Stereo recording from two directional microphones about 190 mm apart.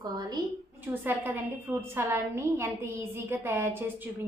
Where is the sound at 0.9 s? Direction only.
10° right (ahead or behind).